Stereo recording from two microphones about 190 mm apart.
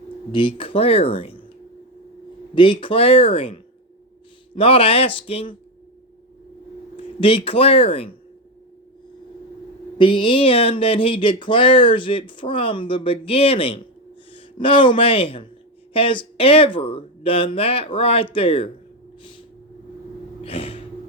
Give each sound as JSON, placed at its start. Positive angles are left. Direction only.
{"t": 0.3, "sound": "speech", "side_deg": 25}
{"t": 2.6, "sound": "speech", "side_deg": 25}
{"t": 4.5, "sound": "speech", "side_deg": 30}
{"t": 7.2, "sound": "speech", "side_deg": 30}
{"t": 10.0, "sound": "speech", "side_deg": 25}
{"t": 20.4, "sound": "a sound", "side_deg": 30}